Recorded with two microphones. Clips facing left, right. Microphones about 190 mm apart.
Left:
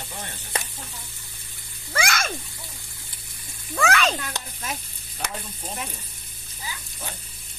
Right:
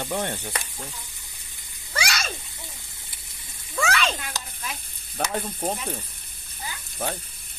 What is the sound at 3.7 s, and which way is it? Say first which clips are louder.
A child's voice: left 3 dB; 50° left (ahead or behind).